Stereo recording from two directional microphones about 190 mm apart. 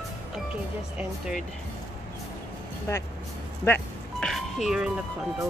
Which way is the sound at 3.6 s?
5° left (ahead or behind).